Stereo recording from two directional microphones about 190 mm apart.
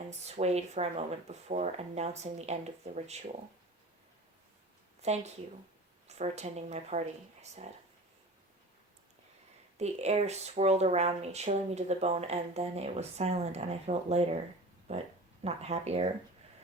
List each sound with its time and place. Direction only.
0.1 s speech: 35° right (ahead or behind)
5.0 s speech: 35° right (ahead or behind)
9.7 s speech: 35° right (ahead or behind)